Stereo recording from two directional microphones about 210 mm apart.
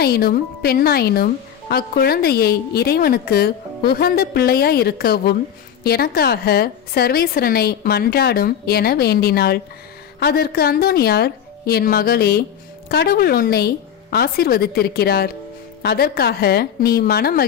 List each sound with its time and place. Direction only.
0.0 s a woman's voice: 45° left (ahead or behind)